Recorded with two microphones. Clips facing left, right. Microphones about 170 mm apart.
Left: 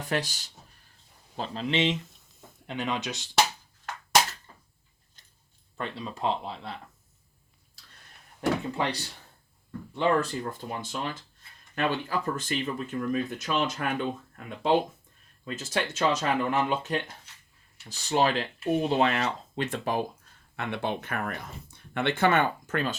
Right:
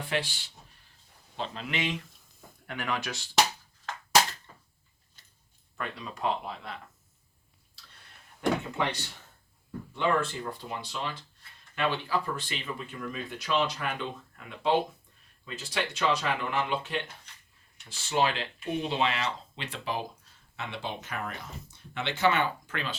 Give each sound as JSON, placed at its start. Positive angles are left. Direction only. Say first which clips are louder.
{"t": 0.0, "sound": "speech", "louder": "left 2 dB", "side_deg": 40}
{"t": 1.4, "sound": "speech", "louder": "left 6 dB", "side_deg": 30}
{"t": 5.7, "sound": "speech", "louder": "left 3 dB", "side_deg": 30}
{"t": 8.4, "sound": "speech", "louder": "left 1 dB", "side_deg": 35}